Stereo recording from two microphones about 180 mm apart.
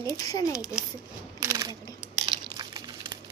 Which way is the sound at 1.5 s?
20° right (ahead or behind).